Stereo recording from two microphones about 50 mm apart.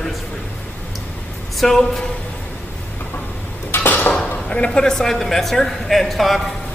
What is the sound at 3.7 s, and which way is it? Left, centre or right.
Dishes, left.